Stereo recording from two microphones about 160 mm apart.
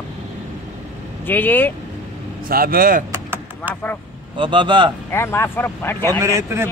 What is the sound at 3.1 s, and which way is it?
Vehicle, 15° right (ahead or behind).